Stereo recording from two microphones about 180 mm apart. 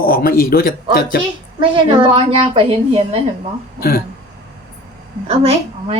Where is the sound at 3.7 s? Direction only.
55° left (ahead or behind).